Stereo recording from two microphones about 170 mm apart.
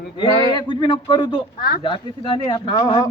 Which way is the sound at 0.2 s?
25° left (ahead or behind).